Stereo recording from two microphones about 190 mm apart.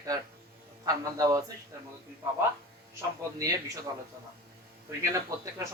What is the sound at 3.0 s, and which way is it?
Speech, 15° right (ahead or behind).